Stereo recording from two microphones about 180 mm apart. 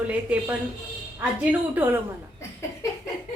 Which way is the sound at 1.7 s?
10° right (ahead or behind).